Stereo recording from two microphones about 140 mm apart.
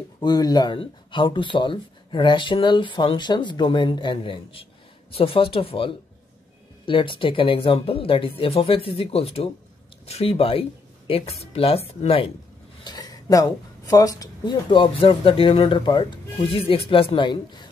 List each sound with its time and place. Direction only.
0.2 s speech: 30° left (ahead or behind)
12.8 s speech: 30° left (ahead or behind)